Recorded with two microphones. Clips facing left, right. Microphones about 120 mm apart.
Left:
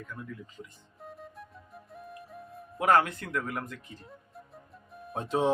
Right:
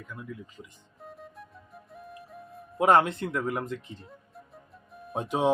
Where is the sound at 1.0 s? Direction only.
Centre (ahead or behind).